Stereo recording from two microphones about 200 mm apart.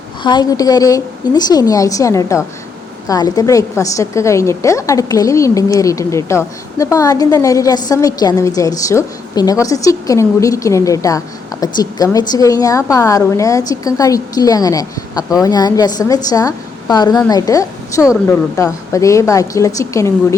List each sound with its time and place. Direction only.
0.2 s a woman's voice: 20° left (ahead or behind)